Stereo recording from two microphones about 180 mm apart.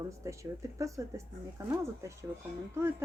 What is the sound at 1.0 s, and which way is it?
Speech, 20° right (ahead or behind).